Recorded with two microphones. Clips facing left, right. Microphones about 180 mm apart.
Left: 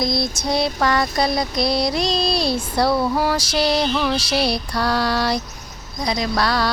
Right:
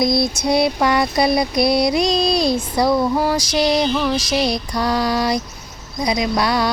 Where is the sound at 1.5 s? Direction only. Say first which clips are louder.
Right 4 dB; 55° right (ahead or behind).